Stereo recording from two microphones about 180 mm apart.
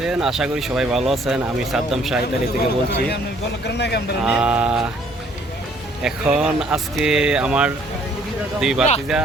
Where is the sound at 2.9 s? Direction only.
70° left (ahead or behind).